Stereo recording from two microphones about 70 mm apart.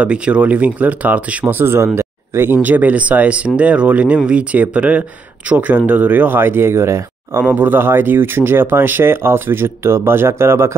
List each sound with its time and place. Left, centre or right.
0.0 s speech: centre; by 7.4 s right
7.4 s speech: right